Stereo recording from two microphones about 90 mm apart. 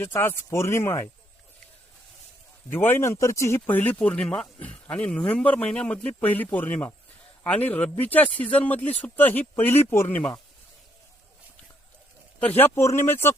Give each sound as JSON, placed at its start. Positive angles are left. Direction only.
{"t": 0.0, "sound": "speech", "side_deg": 25}
{"t": 2.7, "sound": "speech", "side_deg": 25}
{"t": 3.7, "sound": "speech", "side_deg": 20}
{"t": 12.4, "sound": "speech", "side_deg": 20}